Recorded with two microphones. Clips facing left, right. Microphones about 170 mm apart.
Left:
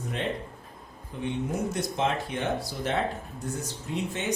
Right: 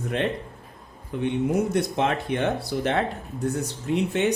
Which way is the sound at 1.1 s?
70° right (ahead or behind).